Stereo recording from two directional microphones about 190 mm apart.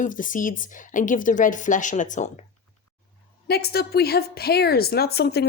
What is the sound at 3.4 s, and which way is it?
A woman's voice, 55° left (ahead or behind).